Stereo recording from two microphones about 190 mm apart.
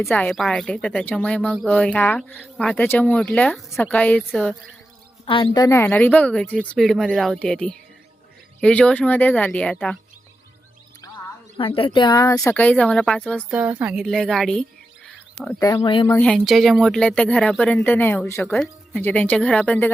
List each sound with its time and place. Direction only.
0.0 s a woman's voice: 10° left (ahead or behind)
5.2 s a woman's voice: 25° left (ahead or behind); by 10.0 s 5° left (ahead or behind)
11.5 s speech: 30° left (ahead or behind)
12.5 s a woman's voice: 10° left (ahead or behind)
13.5 s speech: 10° right (ahead or behind)
15.6 s speech: 20° left (ahead or behind)
16.0 s a woman's voice: 10° left (ahead or behind)